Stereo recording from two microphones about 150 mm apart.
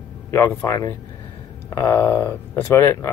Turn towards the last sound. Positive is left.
turn(degrees=15)  # may be behind; listen again after turning